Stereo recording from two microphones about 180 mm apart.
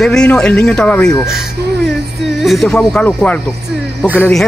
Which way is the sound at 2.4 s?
Centre (ahead or behind).